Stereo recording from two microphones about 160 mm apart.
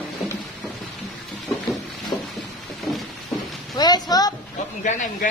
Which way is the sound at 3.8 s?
25° left (ahead or behind).